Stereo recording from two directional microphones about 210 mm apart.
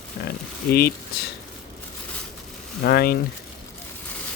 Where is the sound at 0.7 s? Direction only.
45° left (ahead or behind).